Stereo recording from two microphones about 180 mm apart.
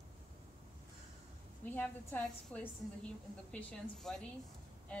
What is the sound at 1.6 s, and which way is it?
A woman's voice, 10° left (ahead or behind).